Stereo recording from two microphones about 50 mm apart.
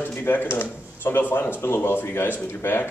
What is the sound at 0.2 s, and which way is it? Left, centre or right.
Speech, left.